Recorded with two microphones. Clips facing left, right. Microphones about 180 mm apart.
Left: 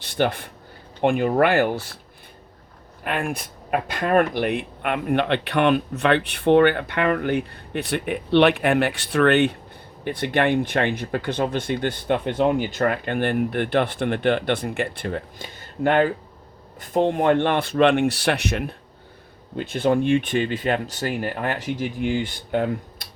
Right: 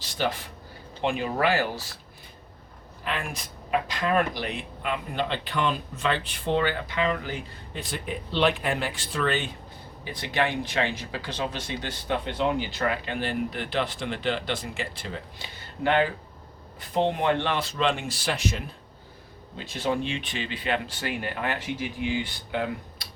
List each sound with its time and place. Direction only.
0.0 s speech: 60° left (ahead or behind)
3.0 s speech: 55° left (ahead or behind)
19.5 s speech: 55° left (ahead or behind)